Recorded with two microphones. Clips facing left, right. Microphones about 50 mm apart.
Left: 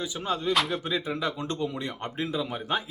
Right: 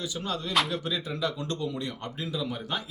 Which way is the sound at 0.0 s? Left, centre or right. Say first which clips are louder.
Left 4 dB; left.